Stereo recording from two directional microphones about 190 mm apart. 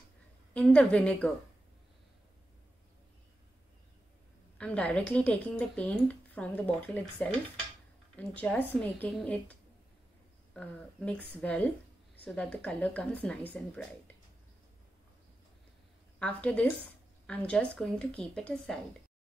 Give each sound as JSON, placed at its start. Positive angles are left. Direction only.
{"t": 0.5, "sound": "speech", "side_deg": 5}
{"t": 4.6, "sound": "speech", "side_deg": 5}
{"t": 8.4, "sound": "speech", "side_deg": 10}
{"t": 16.2, "sound": "a woman's voice", "side_deg": 5}